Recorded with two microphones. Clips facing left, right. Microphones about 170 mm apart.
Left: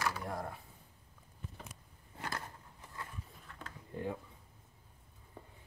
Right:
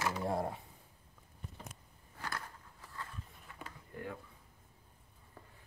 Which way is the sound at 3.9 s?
20° left (ahead or behind).